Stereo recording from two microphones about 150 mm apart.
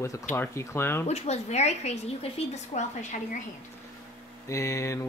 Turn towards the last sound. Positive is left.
turn(degrees=20)  # may be behind; listen again after turning